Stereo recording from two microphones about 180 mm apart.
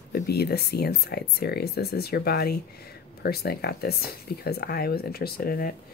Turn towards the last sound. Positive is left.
turn(degrees=55)  # may be behind; listen again after turning